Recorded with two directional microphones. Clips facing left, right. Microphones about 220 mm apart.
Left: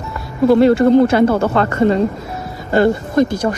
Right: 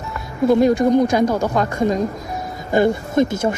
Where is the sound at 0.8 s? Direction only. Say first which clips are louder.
Left 4 dB; 15° right (ahead or behind).